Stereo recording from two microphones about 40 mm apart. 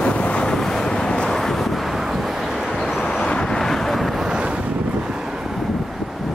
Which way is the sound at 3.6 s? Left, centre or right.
Centre.